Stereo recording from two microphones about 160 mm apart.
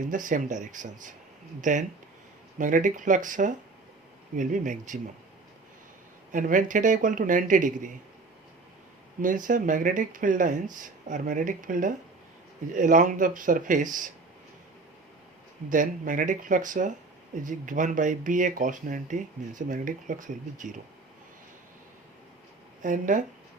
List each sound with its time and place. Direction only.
0.0 s speech: 55° right (ahead or behind)
6.3 s speech: 55° right (ahead or behind)
9.2 s speech: 55° right (ahead or behind)
15.7 s speech: 55° right (ahead or behind)
22.8 s speech: 55° right (ahead or behind)